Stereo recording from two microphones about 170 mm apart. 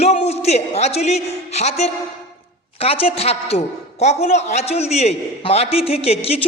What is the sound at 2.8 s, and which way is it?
A man's voice, 35° left (ahead or behind).